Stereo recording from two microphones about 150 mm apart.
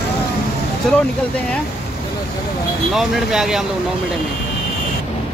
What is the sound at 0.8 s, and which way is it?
Speech, 5° left (ahead or behind).